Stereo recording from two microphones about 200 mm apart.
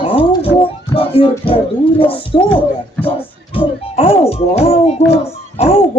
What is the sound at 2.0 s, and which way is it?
Speech, 25° left (ahead or behind).